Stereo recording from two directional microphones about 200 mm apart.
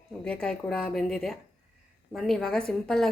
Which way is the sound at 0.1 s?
5° left (ahead or behind).